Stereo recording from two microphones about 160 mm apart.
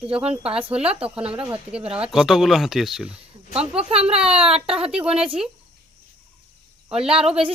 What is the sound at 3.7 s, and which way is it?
Speech, 40° right (ahead or behind).